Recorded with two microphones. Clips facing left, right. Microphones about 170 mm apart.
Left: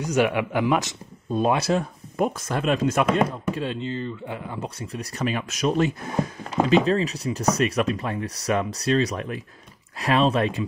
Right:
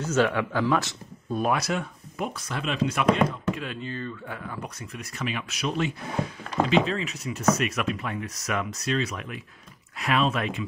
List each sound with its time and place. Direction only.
0.0 s speech: 15° left (ahead or behind); by 1.9 s 30° left (ahead or behind)
2.1 s speech: 45° left (ahead or behind)
3.5 s speech: 30° left (ahead or behind)